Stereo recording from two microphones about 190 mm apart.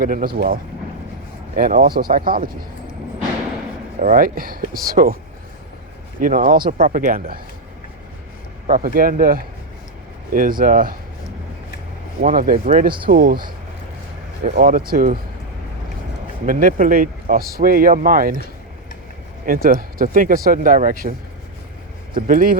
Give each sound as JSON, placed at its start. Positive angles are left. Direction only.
{"t": 0.0, "sound": "speech", "side_deg": -50}
{"t": 4.0, "sound": "speech", "side_deg": -50}
{"t": 6.1, "sound": "speech", "side_deg": -45}
{"t": 8.6, "sound": "speech", "side_deg": -45}
{"t": 12.2, "sound": "speech", "side_deg": -45}
{"t": 14.4, "sound": "speech", "side_deg": -45}
{"t": 16.5, "sound": "speech", "side_deg": -45}
{"t": 19.5, "sound": "speech", "side_deg": -50}